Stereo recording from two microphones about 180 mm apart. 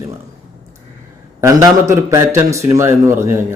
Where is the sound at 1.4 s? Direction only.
15° right (ahead or behind).